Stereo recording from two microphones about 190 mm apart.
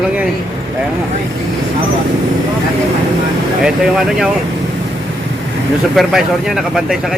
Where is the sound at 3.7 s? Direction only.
Centre (ahead or behind).